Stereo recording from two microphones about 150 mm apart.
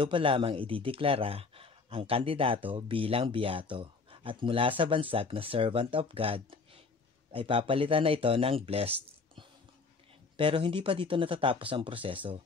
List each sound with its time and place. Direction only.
0.0 s speech: 35° right (ahead or behind)
10.3 s speech: 35° right (ahead or behind)